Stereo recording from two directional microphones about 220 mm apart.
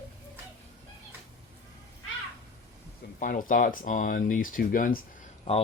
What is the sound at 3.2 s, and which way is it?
Speech, 35° left (ahead or behind).